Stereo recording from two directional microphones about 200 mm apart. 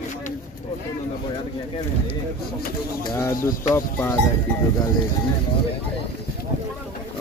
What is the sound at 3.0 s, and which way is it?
Speech, 15° left (ahead or behind).